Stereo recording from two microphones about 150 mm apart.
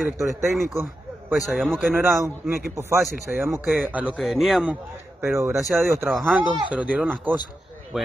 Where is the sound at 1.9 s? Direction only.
15° right (ahead or behind).